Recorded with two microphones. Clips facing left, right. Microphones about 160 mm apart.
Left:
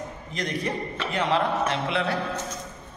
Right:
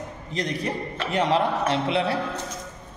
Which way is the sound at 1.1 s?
35° right (ahead or behind).